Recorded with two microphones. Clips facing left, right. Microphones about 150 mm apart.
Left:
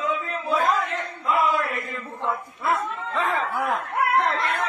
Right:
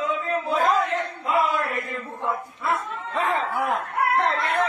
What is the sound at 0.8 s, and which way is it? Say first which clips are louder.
Battle cry: right 2 dB; 60° right (ahead or behind).